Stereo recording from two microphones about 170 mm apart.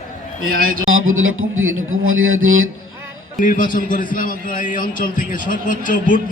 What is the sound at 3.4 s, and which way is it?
A man's voice, 50° left (ahead or behind).